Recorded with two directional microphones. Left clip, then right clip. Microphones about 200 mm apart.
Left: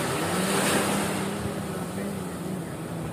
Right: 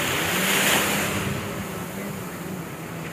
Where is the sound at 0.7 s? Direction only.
40° left (ahead or behind).